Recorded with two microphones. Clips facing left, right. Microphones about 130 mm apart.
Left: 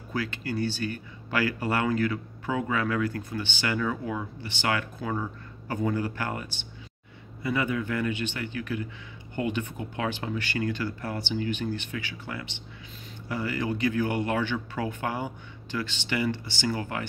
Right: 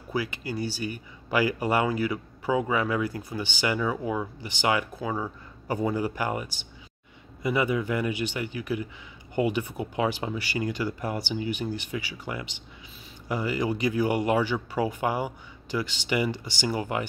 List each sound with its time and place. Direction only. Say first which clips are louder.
0.1 s speech: right 1 dB; 10° right (ahead or behind)